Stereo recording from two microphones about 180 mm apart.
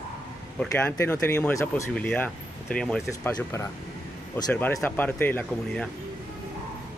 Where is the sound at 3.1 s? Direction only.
15° left (ahead or behind).